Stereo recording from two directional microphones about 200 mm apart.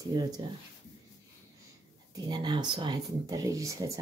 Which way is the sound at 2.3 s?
20° right (ahead or behind).